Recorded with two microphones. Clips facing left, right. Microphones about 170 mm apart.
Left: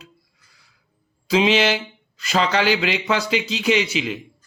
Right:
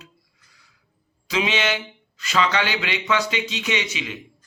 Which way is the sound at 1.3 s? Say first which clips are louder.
Left 6 dB; 30° left (ahead or behind).